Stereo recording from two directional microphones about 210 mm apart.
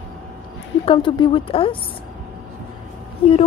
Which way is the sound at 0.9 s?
25° left (ahead or behind).